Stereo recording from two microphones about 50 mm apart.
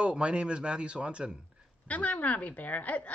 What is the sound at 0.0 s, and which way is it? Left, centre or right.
Speech, centre.